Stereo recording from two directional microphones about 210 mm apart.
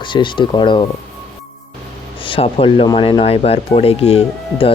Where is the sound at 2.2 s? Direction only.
25° left (ahead or behind).